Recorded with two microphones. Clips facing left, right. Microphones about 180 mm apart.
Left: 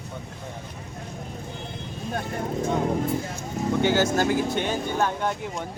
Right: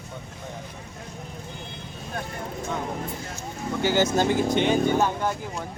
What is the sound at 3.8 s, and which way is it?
Speech, 20° right (ahead or behind).